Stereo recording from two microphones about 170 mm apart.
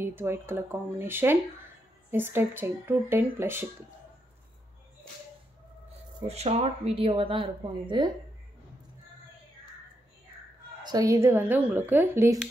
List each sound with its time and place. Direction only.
0.0 s speech: 15° right (ahead or behind)
6.2 s a woman's voice: 40° right (ahead or behind)
10.8 s speech: 20° right (ahead or behind)